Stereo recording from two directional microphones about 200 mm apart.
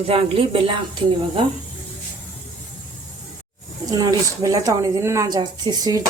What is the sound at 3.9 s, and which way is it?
A woman's voice, 15° right (ahead or behind).